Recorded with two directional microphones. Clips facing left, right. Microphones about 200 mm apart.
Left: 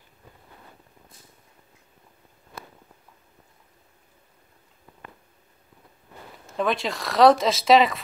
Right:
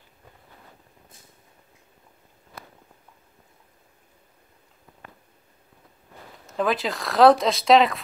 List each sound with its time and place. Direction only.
6.5 s speech: centre (ahead or behind)